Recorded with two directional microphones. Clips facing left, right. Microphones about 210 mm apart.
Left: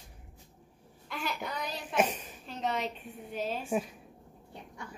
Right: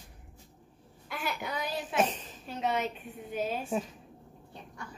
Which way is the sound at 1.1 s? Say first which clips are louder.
Right 1 dB; 5° right (ahead or behind).